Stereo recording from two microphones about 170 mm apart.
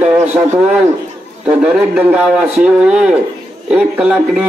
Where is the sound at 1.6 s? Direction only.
5° right (ahead or behind).